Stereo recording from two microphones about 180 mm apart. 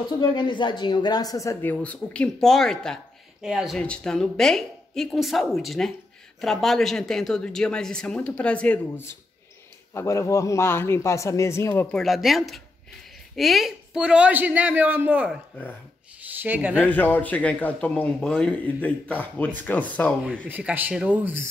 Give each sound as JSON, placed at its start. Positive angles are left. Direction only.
{"t": 0.2, "sound": "a man's voice", "side_deg": 25}
{"t": 16.8, "sound": "a man's voice", "side_deg": 10}
{"t": 20.4, "sound": "a man's voice", "side_deg": -10}